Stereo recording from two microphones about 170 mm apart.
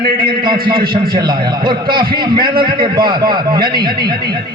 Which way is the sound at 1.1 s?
30° right (ahead or behind).